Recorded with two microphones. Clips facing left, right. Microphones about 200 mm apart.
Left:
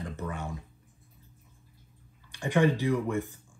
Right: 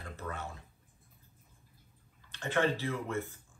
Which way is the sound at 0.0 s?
15° left (ahead or behind).